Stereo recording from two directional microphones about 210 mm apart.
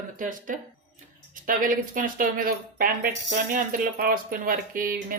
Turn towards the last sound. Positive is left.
turn(degrees=-40)  # may be behind; listen again after turning